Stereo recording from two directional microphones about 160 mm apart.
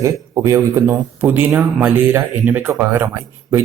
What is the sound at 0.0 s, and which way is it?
Speech, 20° right (ahead or behind).